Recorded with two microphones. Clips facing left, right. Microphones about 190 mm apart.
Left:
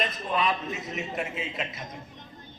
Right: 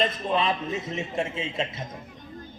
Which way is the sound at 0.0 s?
25° right (ahead or behind).